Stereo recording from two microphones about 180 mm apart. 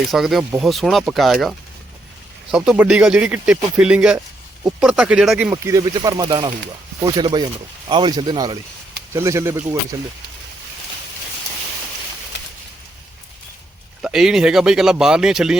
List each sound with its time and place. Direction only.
0.1 s speech: centre (ahead or behind)
14.0 s speech: 5° right (ahead or behind)